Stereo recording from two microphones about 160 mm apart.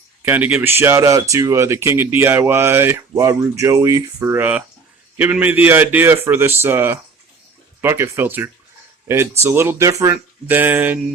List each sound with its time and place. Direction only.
0.3 s speech: 10° right (ahead or behind)